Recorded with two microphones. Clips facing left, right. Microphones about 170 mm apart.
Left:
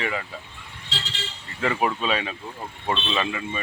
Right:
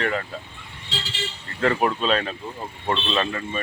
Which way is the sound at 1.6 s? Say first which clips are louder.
Right 3 dB; 5° left (ahead or behind).